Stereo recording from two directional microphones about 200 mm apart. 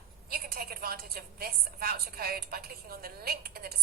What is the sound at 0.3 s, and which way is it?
A woman's voice, 45° right (ahead or behind).